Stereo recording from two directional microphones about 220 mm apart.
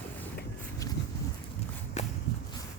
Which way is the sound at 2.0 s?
30° left (ahead or behind).